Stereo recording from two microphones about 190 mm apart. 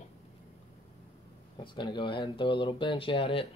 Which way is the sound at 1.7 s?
25° left (ahead or behind).